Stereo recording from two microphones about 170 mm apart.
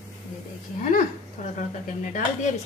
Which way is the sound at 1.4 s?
45° left (ahead or behind).